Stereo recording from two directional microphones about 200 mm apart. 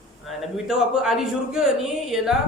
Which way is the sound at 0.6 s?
5° right (ahead or behind).